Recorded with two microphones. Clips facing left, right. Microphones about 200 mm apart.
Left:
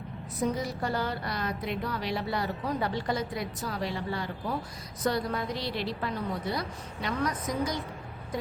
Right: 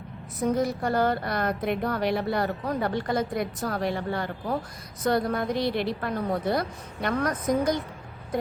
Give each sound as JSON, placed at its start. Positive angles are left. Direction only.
{"t": 0.5, "sound": "speech", "side_deg": -50}